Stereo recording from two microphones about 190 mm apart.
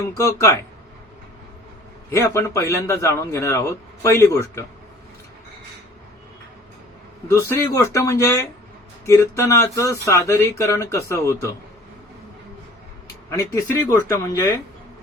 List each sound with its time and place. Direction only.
0.2 s a man's voice: 15° left (ahead or behind)
2.0 s a man's voice: 15° left (ahead or behind)
7.3 s a man's voice: 15° left (ahead or behind)
13.3 s a man's voice: 15° left (ahead or behind)